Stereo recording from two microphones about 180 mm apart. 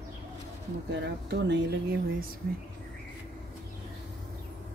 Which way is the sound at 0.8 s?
70° right (ahead or behind).